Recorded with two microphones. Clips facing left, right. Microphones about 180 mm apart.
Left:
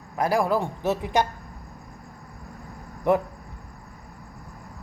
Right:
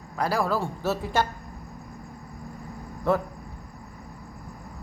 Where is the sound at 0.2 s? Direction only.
20° left (ahead or behind).